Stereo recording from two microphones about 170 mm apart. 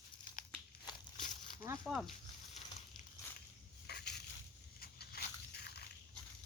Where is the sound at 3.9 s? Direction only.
75° left (ahead or behind).